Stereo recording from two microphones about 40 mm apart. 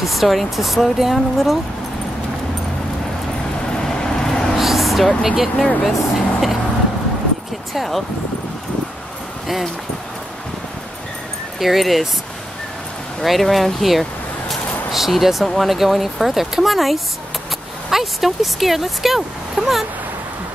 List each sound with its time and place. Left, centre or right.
0.0 s speech: centre
3.7 s vehicle: centre
4.6 s a sound: centre
5.9 s speech: centre
7.7 s speech: centre
11.6 s speech: centre
13.2 s speech: centre
19.6 s a sound: centre